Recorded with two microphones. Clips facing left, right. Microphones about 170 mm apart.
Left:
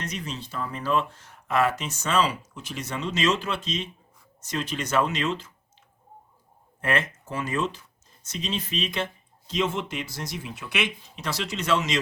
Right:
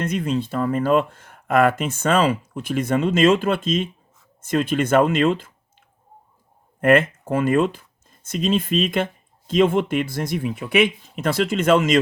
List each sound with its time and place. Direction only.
0.0 s speech: 55° right (ahead or behind)
6.8 s speech: 50° right (ahead or behind)